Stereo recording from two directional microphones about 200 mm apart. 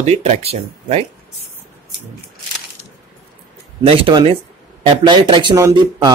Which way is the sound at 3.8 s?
25° right (ahead or behind).